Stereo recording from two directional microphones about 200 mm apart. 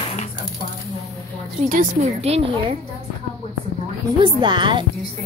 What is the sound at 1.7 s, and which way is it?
A woman's voice, 40° right (ahead or behind).